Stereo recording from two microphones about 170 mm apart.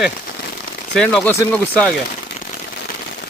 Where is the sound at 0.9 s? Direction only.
5° left (ahead or behind).